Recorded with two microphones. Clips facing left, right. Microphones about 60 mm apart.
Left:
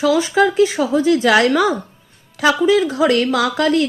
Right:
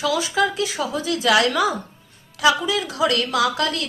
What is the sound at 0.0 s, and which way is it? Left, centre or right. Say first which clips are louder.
A woman's voice: left 6 dB; left.